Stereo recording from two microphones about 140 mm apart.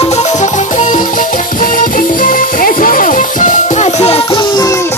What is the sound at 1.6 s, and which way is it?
Music, 80° left.